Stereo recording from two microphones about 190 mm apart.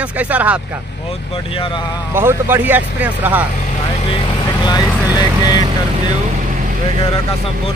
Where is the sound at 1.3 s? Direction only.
30° left (ahead or behind).